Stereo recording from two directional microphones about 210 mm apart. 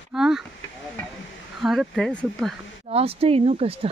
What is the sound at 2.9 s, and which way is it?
Speech, 25° right (ahead or behind).